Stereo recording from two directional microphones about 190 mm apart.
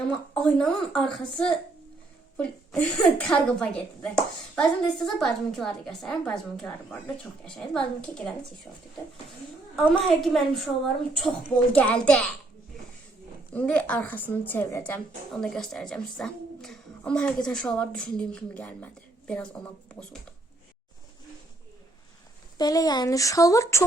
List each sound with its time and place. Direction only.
0.1 s a woman's voice: 5° left (ahead or behind)
10.0 s a woman's voice: centre (ahead or behind)
13.5 s a woman's voice: 5° left (ahead or behind)
22.5 s speech: 20° left (ahead or behind)